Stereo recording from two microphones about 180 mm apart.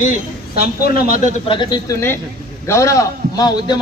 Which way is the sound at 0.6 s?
55° left (ahead or behind).